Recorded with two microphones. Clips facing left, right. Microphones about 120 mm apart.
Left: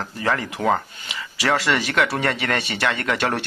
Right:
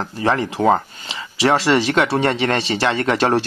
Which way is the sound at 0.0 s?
25° right (ahead or behind).